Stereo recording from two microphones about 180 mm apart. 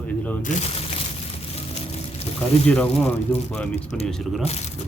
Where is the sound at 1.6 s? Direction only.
35° left (ahead or behind).